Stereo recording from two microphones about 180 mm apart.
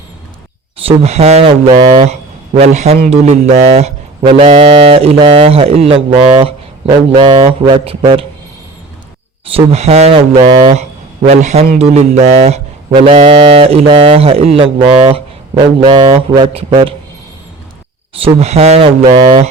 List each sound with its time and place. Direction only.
0.9 s speech: 35° right (ahead or behind)
9.5 s speech: 35° right (ahead or behind)
18.1 s speech: 35° right (ahead or behind)